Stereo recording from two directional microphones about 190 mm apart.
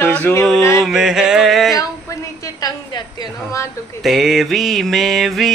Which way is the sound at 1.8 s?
15° left (ahead or behind).